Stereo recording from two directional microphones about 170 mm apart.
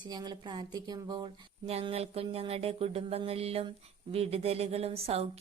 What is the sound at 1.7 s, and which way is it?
Music, 35° right (ahead or behind).